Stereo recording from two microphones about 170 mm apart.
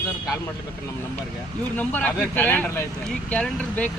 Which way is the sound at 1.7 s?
10° left (ahead or behind).